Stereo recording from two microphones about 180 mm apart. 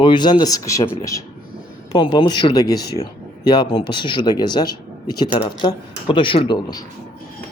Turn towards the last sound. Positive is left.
turn(degrees=25)  # may be behind; listen again after turning